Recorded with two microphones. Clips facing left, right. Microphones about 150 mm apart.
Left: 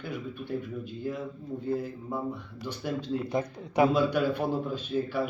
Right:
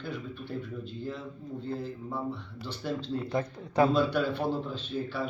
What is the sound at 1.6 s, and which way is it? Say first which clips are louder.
A man's voice: left 4 dB; 10° left (ahead or behind).